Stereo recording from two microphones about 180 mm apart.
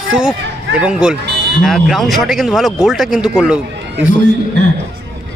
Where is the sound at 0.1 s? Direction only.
5° right (ahead or behind).